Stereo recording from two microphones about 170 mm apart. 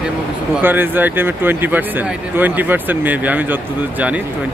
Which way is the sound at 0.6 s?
10° right (ahead or behind).